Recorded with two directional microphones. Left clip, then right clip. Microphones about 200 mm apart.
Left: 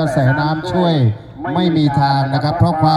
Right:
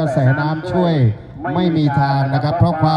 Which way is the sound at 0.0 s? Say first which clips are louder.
Left 2 dB; 25° left (ahead or behind).